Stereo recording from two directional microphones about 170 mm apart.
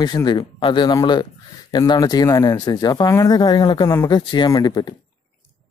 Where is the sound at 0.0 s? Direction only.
25° left (ahead or behind).